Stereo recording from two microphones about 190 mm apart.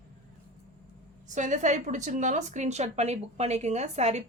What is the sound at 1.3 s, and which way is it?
A woman's voice, 40° right (ahead or behind).